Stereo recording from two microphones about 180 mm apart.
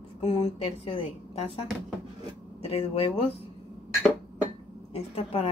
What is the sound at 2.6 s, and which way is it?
Speech, 35° left (ahead or behind).